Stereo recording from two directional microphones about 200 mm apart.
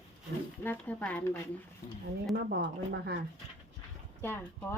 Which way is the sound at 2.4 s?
55° right (ahead or behind).